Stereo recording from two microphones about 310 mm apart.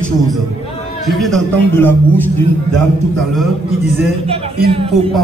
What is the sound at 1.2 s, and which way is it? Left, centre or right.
Speech, centre.